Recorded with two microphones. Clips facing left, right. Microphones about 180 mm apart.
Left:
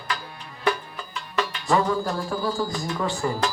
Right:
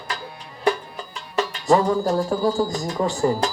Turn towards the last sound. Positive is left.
turn(degrees=-40)  # may be behind; listen again after turning